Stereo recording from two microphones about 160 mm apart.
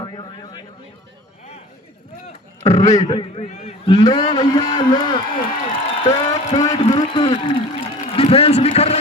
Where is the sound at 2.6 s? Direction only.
45° left (ahead or behind).